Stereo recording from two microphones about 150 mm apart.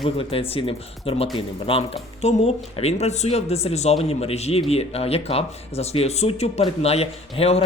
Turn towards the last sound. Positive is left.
turn(degrees=40)  # may be behind; listen again after turning